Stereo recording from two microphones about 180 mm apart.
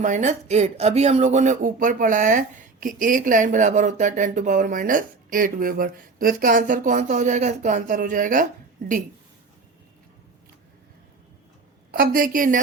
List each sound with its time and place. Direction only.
0.0 s speech: 40° right (ahead or behind)
11.9 s speech: 55° right (ahead or behind)